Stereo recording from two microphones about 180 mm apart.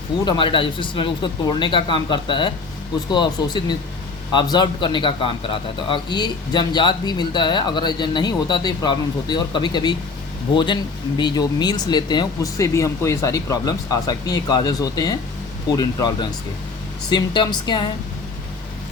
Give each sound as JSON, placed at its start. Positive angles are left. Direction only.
{"t": 0.3, "sound": "a man's voice", "side_deg": 30}